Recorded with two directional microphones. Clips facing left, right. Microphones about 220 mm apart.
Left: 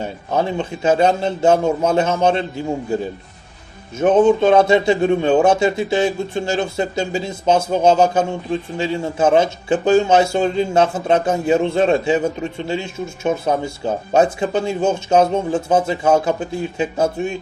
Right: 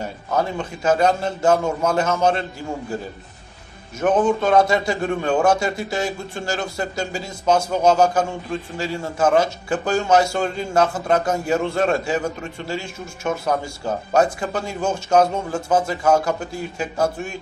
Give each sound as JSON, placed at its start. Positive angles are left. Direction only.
{"t": 0.0, "sound": "a man's voice", "side_deg": 25}
{"t": 4.0, "sound": "a man's voice", "side_deg": 25}